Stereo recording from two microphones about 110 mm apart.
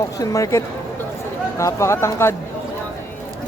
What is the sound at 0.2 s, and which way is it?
A man's voice, 30° left (ahead or behind).